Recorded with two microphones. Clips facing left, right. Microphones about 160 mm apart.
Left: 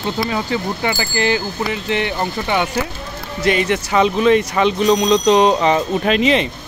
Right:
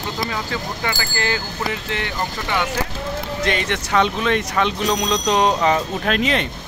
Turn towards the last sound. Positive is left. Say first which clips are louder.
# left 5 dB
turn(degrees=0)  # may be behind; listen again after turning